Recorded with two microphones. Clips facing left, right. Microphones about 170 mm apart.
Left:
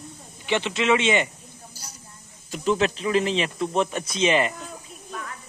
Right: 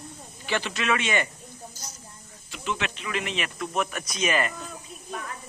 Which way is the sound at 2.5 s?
35° left (ahead or behind).